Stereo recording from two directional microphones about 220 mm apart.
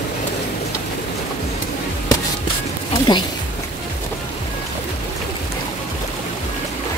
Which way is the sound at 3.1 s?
20° left (ahead or behind).